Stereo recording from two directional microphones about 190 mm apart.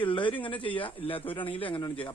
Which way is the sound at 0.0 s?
25° left (ahead or behind).